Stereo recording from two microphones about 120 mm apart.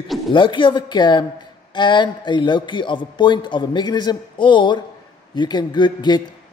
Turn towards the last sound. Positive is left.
turn(degrees=40)  # may be behind; listen again after turning